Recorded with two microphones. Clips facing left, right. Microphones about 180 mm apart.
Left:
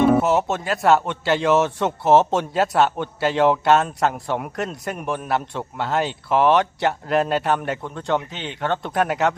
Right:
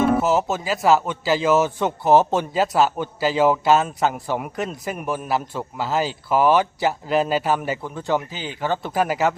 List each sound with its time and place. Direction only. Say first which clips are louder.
0.0 s speech: left 2 dB; centre (ahead or behind)